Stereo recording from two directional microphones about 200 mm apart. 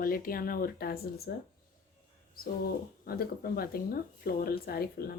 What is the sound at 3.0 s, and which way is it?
Speech, 50° left (ahead or behind).